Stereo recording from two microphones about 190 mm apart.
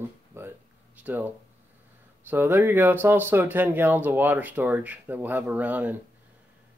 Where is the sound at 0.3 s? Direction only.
15° right (ahead or behind).